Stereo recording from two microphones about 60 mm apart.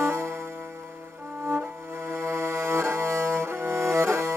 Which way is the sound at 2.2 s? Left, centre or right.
Right.